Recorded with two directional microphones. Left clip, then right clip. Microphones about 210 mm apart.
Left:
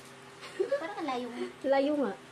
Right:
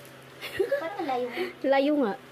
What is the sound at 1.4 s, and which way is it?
Speech, 35° right (ahead or behind).